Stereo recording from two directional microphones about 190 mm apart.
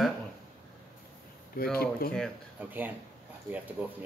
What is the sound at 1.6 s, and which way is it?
Speech, 50° left (ahead or behind).